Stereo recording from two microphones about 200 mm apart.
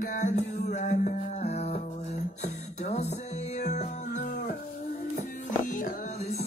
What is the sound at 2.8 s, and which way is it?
Music, 35° left (ahead or behind).